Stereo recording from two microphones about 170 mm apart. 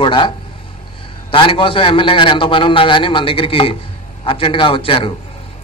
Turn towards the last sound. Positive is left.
turn(degrees=30)  # may be behind; listen again after turning